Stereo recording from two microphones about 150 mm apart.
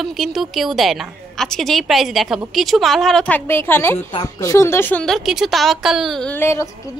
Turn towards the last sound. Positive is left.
turn(degrees=15)  # may be behind; listen again after turning